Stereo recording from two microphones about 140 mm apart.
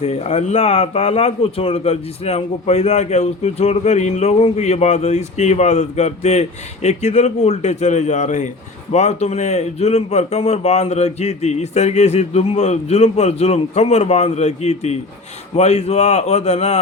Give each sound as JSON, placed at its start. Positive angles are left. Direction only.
{"t": 0.0, "sound": "a man's voice", "side_deg": 50}